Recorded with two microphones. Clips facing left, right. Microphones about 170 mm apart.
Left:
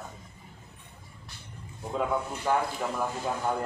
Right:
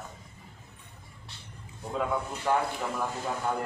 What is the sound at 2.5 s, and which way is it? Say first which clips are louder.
Speech: even; 5° left (ahead or behind).